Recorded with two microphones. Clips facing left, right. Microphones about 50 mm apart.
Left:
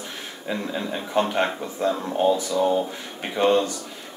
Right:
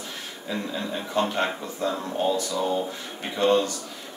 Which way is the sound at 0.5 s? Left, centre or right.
Left.